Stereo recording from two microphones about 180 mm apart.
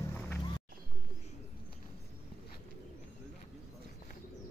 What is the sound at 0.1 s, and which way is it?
Music, 10° left (ahead or behind).